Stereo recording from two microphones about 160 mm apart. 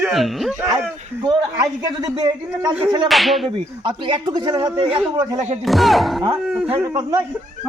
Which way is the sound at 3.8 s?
25° right (ahead or behind).